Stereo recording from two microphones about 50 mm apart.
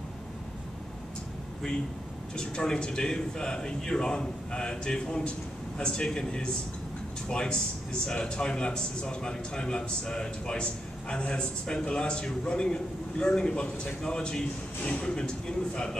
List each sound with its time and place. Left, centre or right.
2.3 s a man's voice: centre